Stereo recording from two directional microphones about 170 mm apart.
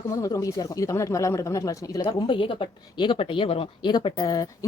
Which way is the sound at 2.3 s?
30° left (ahead or behind).